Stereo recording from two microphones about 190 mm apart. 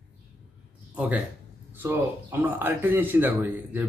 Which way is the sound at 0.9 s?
5° right (ahead or behind).